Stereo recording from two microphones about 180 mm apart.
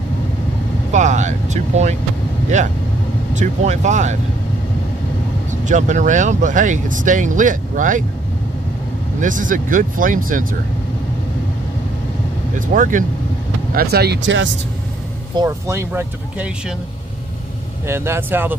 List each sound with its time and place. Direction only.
0.9 s speech: 40° right (ahead or behind)
3.3 s speech: 40° right (ahead or behind)
5.5 s speech: 40° right (ahead or behind)
9.2 s speech: 45° right (ahead or behind)
12.5 s speech: 45° right (ahead or behind)
13.7 s speech: 65° right (ahead or behind); by 14.5 s 90° right
15.3 s speech: 15° right (ahead or behind)
17.8 s speech: 15° right (ahead or behind)